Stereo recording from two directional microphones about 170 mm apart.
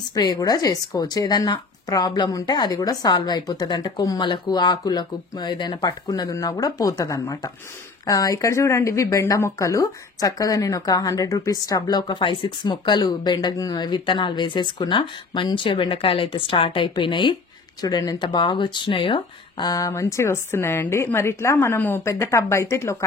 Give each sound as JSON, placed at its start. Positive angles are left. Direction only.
{"t": 0.1, "sound": "speech", "side_deg": 20}